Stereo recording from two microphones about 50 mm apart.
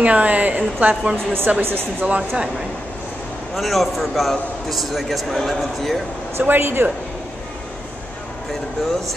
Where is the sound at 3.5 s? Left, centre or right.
Centre.